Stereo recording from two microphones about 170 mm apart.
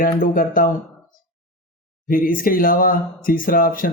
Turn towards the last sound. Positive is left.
turn(degrees=55)  # may be behind; listen again after turning